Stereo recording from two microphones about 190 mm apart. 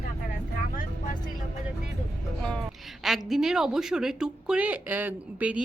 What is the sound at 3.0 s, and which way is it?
A woman's voice, centre (ahead or behind).